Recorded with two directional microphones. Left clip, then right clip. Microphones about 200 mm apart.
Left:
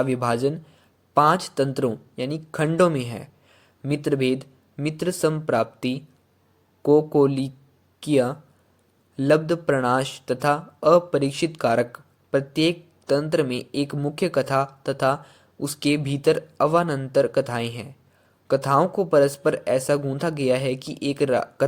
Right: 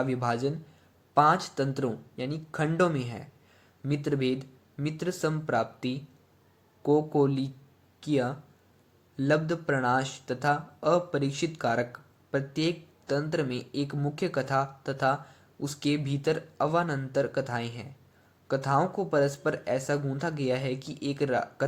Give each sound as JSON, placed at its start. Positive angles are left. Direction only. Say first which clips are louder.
{"t": 0.0, "sound": "speech", "louder": "left 7 dB", "side_deg": 45}